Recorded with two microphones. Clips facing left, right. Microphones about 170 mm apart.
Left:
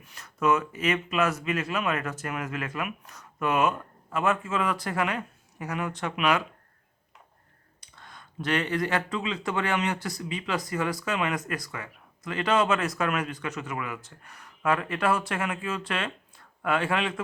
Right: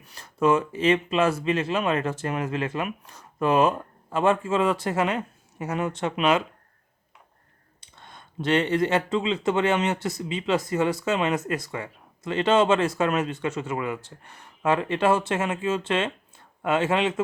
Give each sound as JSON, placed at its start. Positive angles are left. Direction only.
{"t": 0.0, "sound": "speech", "side_deg": -30}
{"t": 7.8, "sound": "speech", "side_deg": -25}